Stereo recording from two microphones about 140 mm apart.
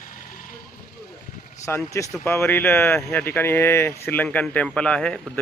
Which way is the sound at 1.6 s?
20° left (ahead or behind).